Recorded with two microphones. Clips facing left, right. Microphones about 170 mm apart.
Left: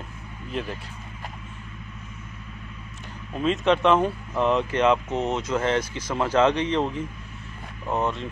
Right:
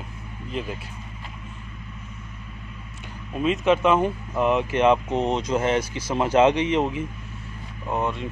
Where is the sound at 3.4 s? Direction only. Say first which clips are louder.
Right 1 dB; 5° right (ahead or behind).